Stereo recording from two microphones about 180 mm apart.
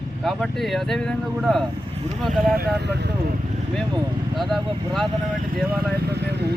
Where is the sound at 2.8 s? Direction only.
70° right (ahead or behind).